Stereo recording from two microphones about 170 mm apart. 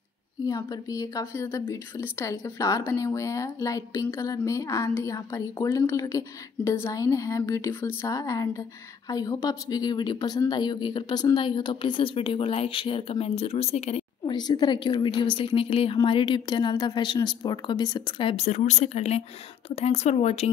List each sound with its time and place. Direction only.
0.5 s a woman's voice: 20° left (ahead or behind); by 14.0 s 40° left (ahead or behind)
14.2 s speech: 25° left (ahead or behind); by 20.4 s 40° left (ahead or behind)